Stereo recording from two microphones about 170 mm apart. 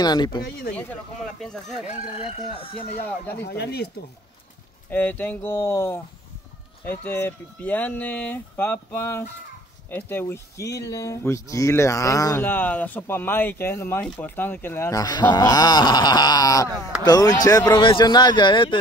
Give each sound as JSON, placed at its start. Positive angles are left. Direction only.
{"t": 0.0, "sound": "speech", "side_deg": 25}
{"t": 0.7, "sound": "speech", "side_deg": 0}
{"t": 1.9, "sound": "speech", "side_deg": 40}
{"t": 3.4, "sound": "speech", "side_deg": 75}
{"t": 4.9, "sound": "speech", "side_deg": 10}